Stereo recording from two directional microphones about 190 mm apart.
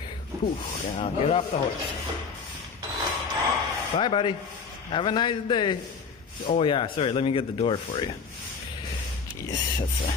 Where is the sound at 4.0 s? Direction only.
25° left (ahead or behind).